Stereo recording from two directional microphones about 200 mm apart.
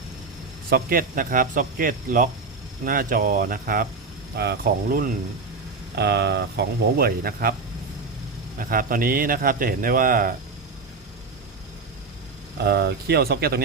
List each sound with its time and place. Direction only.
0.7 s speech: 45° right (ahead or behind)
6.0 s speech: 55° right (ahead or behind)
8.5 s speech: 45° right (ahead or behind)
12.6 s speech: 55° right (ahead or behind)